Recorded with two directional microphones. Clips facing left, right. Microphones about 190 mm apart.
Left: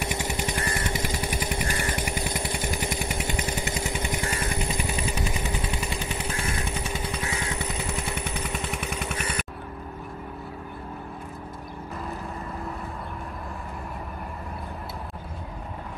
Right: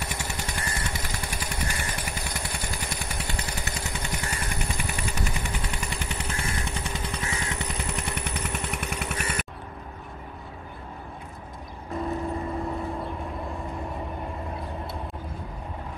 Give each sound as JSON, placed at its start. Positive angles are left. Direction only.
{"t": 0.0, "sound": "motorcycle", "side_deg": 20}
{"t": 2.1, "sound": "vehicle", "side_deg": 20}
{"t": 8.8, "sound": "vehicle", "side_deg": -5}